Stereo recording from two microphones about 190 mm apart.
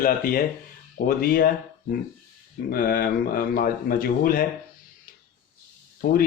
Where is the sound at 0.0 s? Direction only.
50° left (ahead or behind).